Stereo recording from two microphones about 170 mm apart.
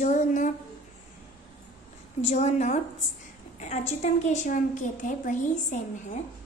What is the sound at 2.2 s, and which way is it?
A woman's voice, 45° left (ahead or behind).